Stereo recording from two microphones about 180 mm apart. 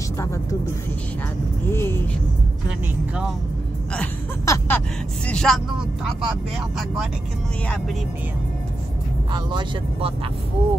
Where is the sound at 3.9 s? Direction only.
15° left (ahead or behind).